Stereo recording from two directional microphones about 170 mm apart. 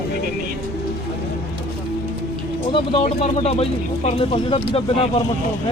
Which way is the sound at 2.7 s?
30° left (ahead or behind).